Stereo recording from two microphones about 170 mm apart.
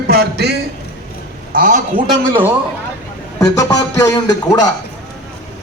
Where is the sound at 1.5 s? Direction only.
50° right (ahead or behind).